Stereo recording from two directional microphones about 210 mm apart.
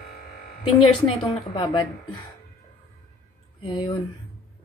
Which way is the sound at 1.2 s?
30° left (ahead or behind).